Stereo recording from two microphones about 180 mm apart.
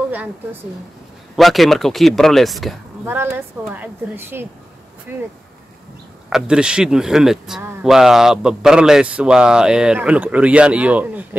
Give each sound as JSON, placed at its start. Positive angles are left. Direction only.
{"t": 0.1, "sound": "a woman's voice", "side_deg": -10}
{"t": 3.1, "sound": "a woman's voice", "side_deg": -15}
{"t": 6.3, "sound": "speech", "side_deg": -5}